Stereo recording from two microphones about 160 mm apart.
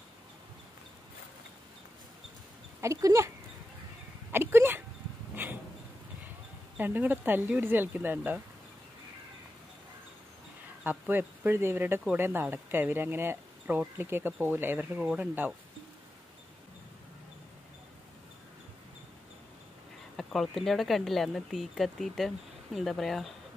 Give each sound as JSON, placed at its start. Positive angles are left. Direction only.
{"t": 2.8, "sound": "speech", "side_deg": -20}
{"t": 4.3, "sound": "speech", "side_deg": -15}
{"t": 5.3, "sound": "a sound", "side_deg": -10}
{"t": 6.8, "sound": "speech", "side_deg": -10}
{"t": 10.8, "sound": "speech", "side_deg": -10}
{"t": 20.2, "sound": "speech", "side_deg": 0}